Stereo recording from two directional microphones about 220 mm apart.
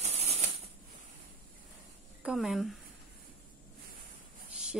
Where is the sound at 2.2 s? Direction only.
Centre (ahead or behind).